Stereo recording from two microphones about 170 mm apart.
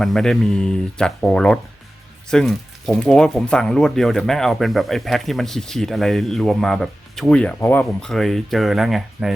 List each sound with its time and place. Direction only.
0.0 s speech: centre (ahead or behind)